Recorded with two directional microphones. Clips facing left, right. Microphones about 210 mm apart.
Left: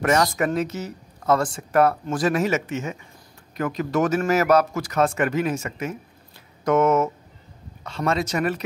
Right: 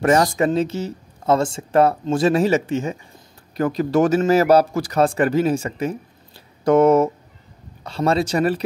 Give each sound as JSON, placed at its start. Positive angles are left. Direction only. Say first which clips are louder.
{"t": 0.0, "sound": "speech", "louder": "right 4 dB", "side_deg": -30}